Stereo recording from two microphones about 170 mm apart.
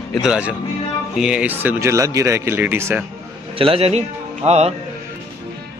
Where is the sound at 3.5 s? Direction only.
35° right (ahead or behind).